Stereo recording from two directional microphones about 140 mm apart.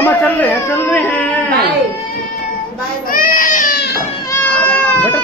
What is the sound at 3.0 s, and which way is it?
Baby cry, 85° left.